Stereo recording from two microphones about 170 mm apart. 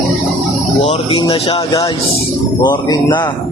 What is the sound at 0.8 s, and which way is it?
Speech, 35° left (ahead or behind).